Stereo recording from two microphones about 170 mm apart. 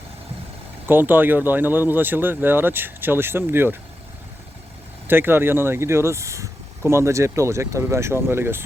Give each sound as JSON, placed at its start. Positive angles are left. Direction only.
{"t": 0.9, "sound": "speech", "side_deg": -10}
{"t": 5.0, "sound": "speech", "side_deg": -10}